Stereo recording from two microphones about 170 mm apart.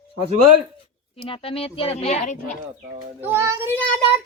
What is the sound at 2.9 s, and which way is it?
Speech, 15° right (ahead or behind).